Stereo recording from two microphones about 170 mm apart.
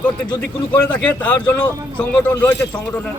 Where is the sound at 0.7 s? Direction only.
10° left (ahead or behind).